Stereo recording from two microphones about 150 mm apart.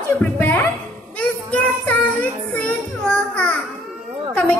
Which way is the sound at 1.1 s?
10° left (ahead or behind).